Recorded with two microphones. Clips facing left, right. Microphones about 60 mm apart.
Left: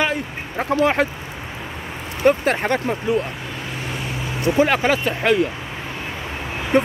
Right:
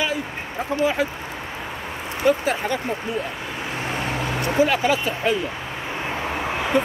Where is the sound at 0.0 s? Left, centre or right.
Left.